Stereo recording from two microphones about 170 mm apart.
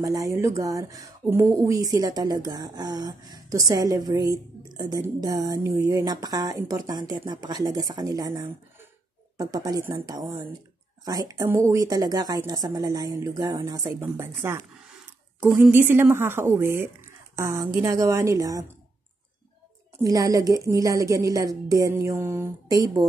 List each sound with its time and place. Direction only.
0.0 s a woman's voice: 20° right (ahead or behind)
20.0 s speech: 20° right (ahead or behind)